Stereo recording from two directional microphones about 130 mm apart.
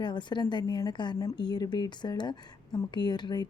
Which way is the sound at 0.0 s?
35° left (ahead or behind).